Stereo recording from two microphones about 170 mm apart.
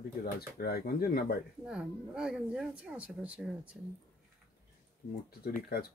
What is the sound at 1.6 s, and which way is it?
A woman's voice, 5° right (ahead or behind).